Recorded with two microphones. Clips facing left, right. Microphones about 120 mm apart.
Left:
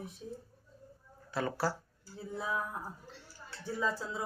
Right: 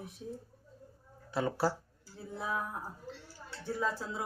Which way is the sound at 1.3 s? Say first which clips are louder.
Right 2 dB; 20° right (ahead or behind).